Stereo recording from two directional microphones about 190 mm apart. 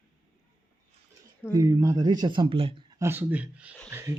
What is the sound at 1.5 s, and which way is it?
Speech, 15° right (ahead or behind).